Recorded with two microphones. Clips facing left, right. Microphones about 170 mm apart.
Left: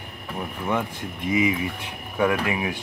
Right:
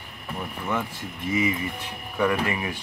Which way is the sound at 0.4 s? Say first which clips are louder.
Left 3 dB; 10° left (ahead or behind).